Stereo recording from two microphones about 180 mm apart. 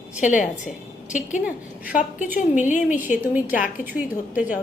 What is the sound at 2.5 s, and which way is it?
Speech, 45° left (ahead or behind).